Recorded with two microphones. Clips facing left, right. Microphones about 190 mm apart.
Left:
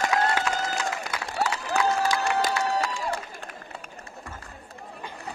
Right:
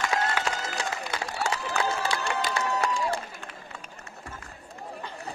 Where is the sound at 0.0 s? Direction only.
40° left (ahead or behind).